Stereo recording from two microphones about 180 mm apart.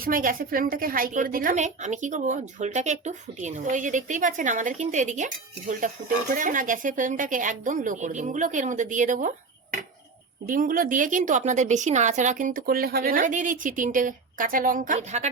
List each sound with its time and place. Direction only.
0.0 s a woman's voice: 50° right (ahead or behind)
10.5 s a woman's voice: 50° right (ahead or behind)